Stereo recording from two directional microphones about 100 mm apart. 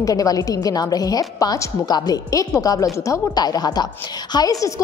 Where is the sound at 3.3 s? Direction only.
40° left (ahead or behind).